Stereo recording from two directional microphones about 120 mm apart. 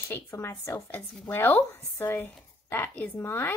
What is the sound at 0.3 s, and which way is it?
Speech, 25° left (ahead or behind).